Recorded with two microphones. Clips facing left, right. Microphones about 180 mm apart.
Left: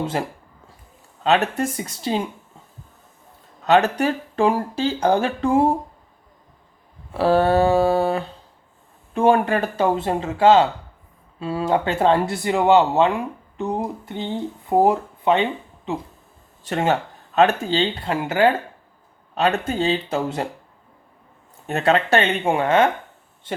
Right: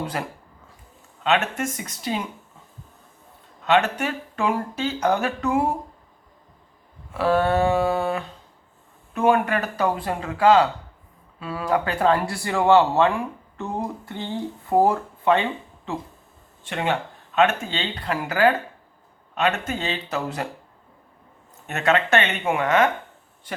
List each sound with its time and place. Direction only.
0.0 s speech: 25° left (ahead or behind)
1.2 s speech: 35° left (ahead or behind)
3.7 s speech: 40° left (ahead or behind)
7.1 s speech: 30° left (ahead or behind)
16.6 s speech: 40° left (ahead or behind)
21.7 s speech: 30° left (ahead or behind)